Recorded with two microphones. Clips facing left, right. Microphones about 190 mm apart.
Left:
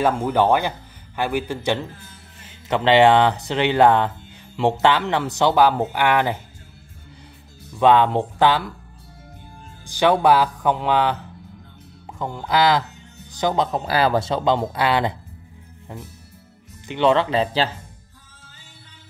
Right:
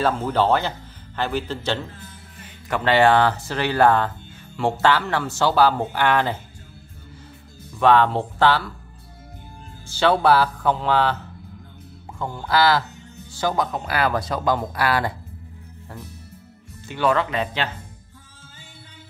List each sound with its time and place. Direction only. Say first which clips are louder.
0.0 s a man's voice: left 2 dB; 15° left (ahead or behind)
7.8 s speech: left 1 dB; 15° left (ahead or behind)
9.8 s speech: left 1 dB; 15° left (ahead or behind)
12.2 s speech: left 1 dB; 15° left (ahead or behind)
13.7 s speech: left 3 dB; 30° left (ahead or behind)
16.8 s speech: left 3 dB; 20° left (ahead or behind)